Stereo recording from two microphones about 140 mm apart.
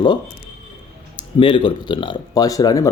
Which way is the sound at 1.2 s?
35° left (ahead or behind).